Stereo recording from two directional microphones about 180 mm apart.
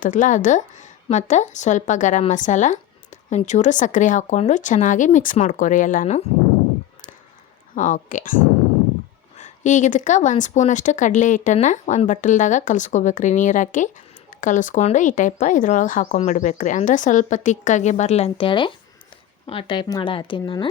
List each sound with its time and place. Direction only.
0.0 s speech: 45° left (ahead or behind)
7.8 s speech: 45° left (ahead or behind)
9.4 s speech: 45° left (ahead or behind); by 20.7 s 25° left (ahead or behind)